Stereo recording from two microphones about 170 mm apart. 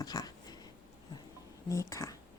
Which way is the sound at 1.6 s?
15° left (ahead or behind).